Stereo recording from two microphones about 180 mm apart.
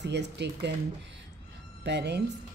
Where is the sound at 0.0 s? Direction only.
70° right (ahead or behind).